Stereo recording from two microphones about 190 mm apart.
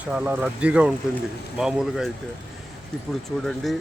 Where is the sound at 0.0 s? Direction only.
10° right (ahead or behind).